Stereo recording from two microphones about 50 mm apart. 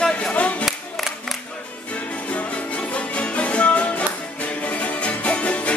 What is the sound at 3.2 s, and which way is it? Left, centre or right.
Music, left.